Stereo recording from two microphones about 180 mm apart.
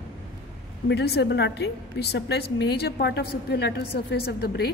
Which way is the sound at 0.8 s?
65° left (ahead or behind).